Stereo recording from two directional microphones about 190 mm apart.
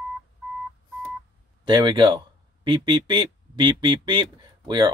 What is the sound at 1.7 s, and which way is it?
Speech, 25° right (ahead or behind).